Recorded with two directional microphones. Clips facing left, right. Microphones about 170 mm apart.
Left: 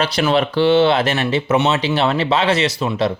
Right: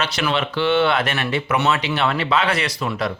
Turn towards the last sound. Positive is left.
turn(degrees=25)  # may be behind; listen again after turning